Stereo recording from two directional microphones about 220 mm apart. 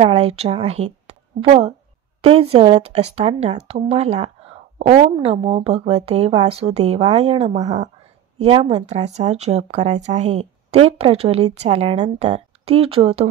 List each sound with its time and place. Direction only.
0.0 s a woman's voice: 25° right (ahead or behind)